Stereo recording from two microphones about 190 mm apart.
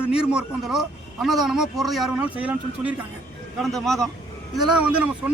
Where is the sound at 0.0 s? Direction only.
5° right (ahead or behind).